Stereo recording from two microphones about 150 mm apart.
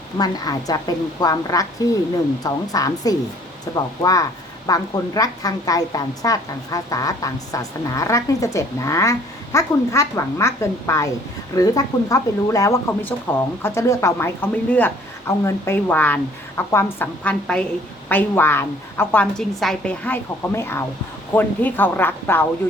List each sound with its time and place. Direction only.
0.2 s a woman's voice: 25° left (ahead or behind)